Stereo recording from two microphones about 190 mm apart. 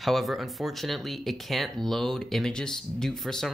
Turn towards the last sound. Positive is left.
turn(degrees=0)  # may be behind; listen again after turning